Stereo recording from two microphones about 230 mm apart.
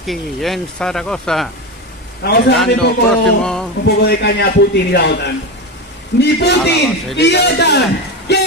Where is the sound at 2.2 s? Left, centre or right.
Left.